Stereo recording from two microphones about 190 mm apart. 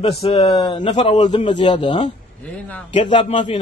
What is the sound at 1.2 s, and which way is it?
Speech, 25° left (ahead or behind).